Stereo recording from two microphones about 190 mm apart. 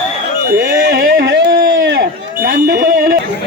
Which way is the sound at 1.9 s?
60° right (ahead or behind).